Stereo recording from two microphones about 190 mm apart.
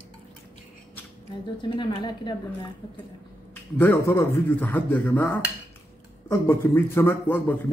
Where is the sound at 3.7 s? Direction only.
10° left (ahead or behind).